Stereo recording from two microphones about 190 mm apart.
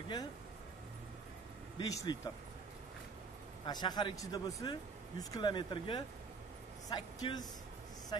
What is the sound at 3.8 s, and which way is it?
Speech, 20° left (ahead or behind).